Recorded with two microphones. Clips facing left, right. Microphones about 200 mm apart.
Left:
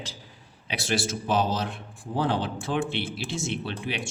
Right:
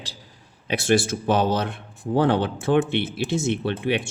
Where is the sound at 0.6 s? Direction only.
50° right (ahead or behind).